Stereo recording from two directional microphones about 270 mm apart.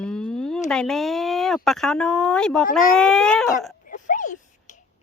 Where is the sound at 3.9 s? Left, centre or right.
Left.